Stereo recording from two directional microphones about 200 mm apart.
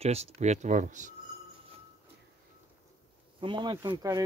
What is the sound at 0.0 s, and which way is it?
Speech, 30° right (ahead or behind).